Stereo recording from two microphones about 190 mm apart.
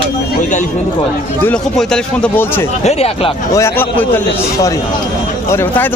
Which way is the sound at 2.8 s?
30° left (ahead or behind).